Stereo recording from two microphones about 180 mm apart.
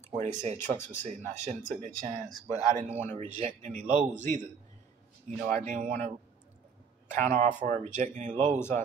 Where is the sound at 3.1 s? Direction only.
40° right (ahead or behind).